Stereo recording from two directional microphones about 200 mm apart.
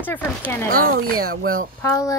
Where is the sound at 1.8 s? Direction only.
15° left (ahead or behind).